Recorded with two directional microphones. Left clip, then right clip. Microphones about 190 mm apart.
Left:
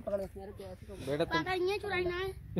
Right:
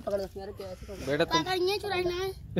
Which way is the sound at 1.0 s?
5° left (ahead or behind).